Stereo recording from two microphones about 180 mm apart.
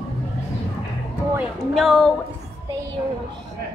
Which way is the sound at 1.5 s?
Centre (ahead or behind).